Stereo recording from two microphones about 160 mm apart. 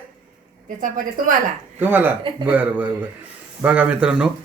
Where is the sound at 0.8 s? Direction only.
55° right (ahead or behind).